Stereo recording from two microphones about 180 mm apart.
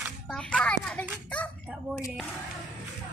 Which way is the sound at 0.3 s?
5° left (ahead or behind).